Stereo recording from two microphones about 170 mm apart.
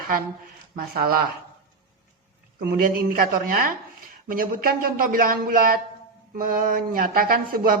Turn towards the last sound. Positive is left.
turn(degrees=-55)  # may be behind; listen again after turning